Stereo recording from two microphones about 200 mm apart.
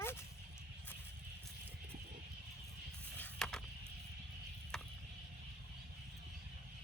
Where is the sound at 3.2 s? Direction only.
5° left (ahead or behind).